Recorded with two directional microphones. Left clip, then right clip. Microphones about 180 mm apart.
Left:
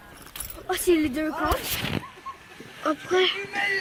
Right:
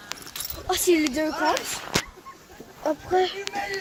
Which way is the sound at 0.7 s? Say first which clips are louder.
Right 1 dB; 15° left (ahead or behind).